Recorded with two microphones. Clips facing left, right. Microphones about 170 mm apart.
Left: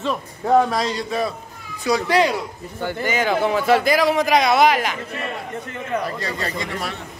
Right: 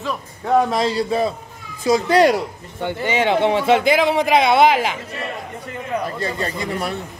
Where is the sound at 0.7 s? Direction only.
25° right (ahead or behind).